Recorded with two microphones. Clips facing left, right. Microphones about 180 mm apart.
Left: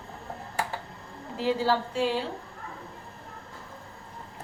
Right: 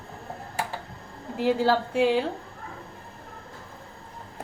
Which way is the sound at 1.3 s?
55° right (ahead or behind).